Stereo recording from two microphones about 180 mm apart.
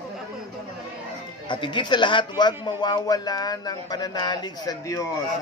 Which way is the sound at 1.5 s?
25° left (ahead or behind).